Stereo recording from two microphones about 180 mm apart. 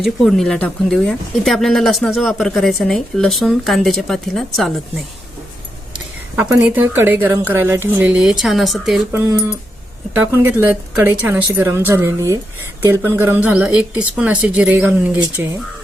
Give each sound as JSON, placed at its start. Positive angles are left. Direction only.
{"t": 0.0, "sound": "speech", "side_deg": 0}
{"t": 6.3, "sound": "a woman's voice", "side_deg": -10}
{"t": 9.2, "sound": "a woman's voice", "side_deg": -15}